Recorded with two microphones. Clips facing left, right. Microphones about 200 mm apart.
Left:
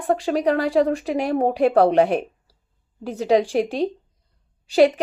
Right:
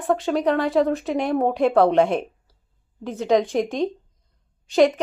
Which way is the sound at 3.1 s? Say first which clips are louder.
Left 1 dB; 35° left (ahead or behind).